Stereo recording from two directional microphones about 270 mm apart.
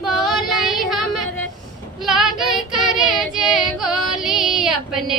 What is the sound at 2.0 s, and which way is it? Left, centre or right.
Child singing, centre.